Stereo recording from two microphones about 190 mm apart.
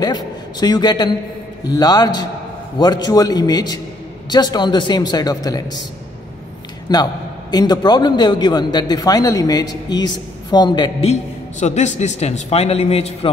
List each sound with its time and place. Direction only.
0.0 s a man's voice: 20° left (ahead or behind)
6.9 s a man's voice: 20° left (ahead or behind)
11.6 s a man's voice: 35° left (ahead or behind)